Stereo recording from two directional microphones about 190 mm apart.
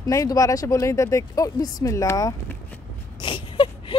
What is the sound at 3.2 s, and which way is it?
Wail, 25° left (ahead or behind).